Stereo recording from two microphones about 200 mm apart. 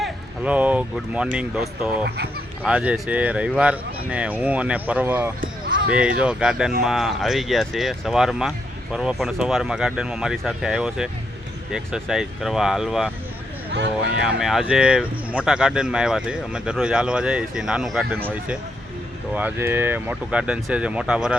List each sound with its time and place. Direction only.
0.0 s speech: 5° right (ahead or behind)
2.0 s speech: 55° right (ahead or behind)
2.6 s speech: 5° right (ahead or behind)
14.2 s speech: 5° right (ahead or behind)